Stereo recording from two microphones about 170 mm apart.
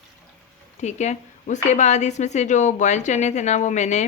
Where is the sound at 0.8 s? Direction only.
45° left (ahead or behind).